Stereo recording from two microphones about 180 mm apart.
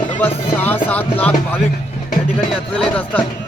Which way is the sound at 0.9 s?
10° left (ahead or behind).